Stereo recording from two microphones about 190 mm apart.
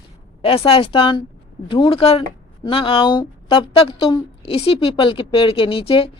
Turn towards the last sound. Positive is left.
turn(degrees=30)  # may be behind; listen again after turning